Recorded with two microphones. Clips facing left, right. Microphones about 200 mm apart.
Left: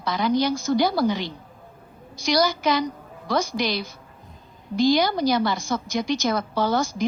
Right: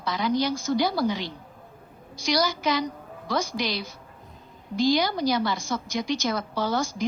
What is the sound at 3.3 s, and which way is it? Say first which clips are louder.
Speech: left 4 dB; 70° left (ahead or behind).